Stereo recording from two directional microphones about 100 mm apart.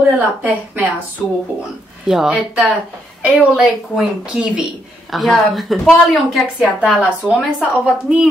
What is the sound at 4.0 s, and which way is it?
Speech, 10° right (ahead or behind).